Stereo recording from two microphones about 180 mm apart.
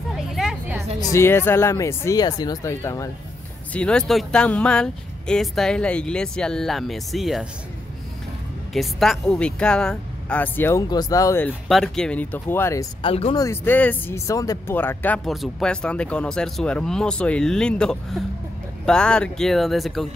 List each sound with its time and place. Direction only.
0.1 s a sound: centre (ahead or behind)
1.0 s speech: 15° left (ahead or behind)
3.7 s speech: 5° left (ahead or behind)
8.7 s speech: centre (ahead or behind)
11.7 s speech: 5° left (ahead or behind)
13.0 s speech: 30° left (ahead or behind)
13.4 s speech: 10° left (ahead or behind)